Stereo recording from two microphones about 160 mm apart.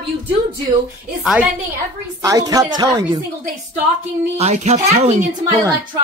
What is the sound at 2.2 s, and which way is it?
Speech, 25° right (ahead or behind).